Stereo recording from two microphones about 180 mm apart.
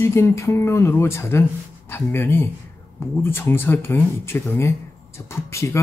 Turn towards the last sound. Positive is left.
turn(degrees=15)  # may be behind; listen again after turning